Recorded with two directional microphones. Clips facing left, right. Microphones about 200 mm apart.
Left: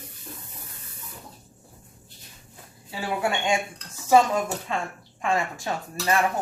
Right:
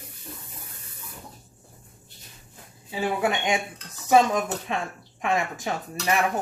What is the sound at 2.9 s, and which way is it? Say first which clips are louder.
Speech: right 2 dB; 20° right (ahead or behind).